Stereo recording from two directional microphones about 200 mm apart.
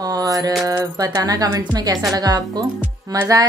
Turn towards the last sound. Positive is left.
turn(degrees=-15)  # may be behind; listen again after turning